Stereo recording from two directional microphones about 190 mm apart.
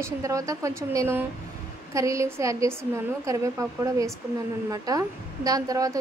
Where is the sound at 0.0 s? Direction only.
15° right (ahead or behind).